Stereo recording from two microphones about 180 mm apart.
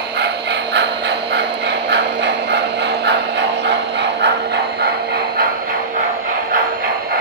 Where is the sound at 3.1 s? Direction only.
70° right (ahead or behind).